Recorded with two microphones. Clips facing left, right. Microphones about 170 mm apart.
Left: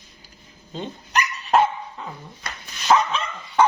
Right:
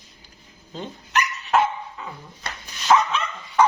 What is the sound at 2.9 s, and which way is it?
Dog, 30° left (ahead or behind).